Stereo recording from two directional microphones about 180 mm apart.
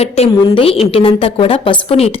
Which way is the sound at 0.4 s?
30° left (ahead or behind).